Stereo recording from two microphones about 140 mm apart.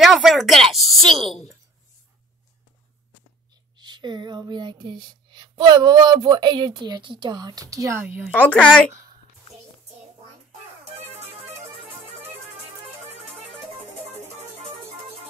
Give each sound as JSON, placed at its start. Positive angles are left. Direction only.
{"t": 0.0, "sound": "speech", "side_deg": 0}
{"t": 3.7, "sound": "speech", "side_deg": -35}
{"t": 8.3, "sound": "speech", "side_deg": 10}
{"t": 14.2, "sound": "music", "side_deg": -50}